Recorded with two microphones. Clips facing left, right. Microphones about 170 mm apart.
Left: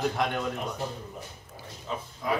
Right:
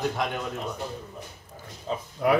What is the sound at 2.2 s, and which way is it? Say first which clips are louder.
Speech: right 8 dB; 75° right (ahead or behind).